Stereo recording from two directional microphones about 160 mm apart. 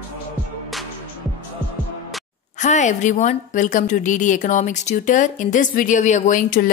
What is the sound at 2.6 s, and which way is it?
A woman's voice, 50° left (ahead or behind).